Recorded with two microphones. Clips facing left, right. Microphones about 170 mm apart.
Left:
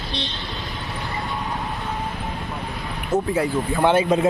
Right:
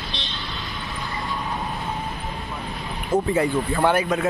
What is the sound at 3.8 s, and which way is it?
Speech, 25° left (ahead or behind).